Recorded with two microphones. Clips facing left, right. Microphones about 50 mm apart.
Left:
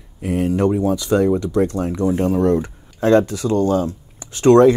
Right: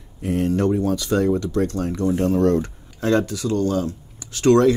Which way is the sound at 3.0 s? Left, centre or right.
Left.